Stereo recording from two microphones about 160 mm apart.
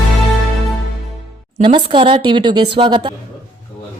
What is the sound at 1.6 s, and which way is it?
Speech, 30° right (ahead or behind).